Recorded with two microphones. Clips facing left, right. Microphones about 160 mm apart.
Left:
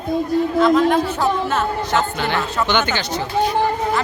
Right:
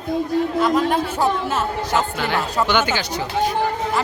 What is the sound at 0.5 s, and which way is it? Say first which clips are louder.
A man's voice: left 5 dB; 10° right (ahead or behind).